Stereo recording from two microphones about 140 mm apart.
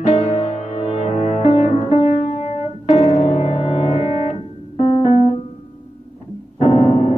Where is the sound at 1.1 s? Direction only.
55° left (ahead or behind).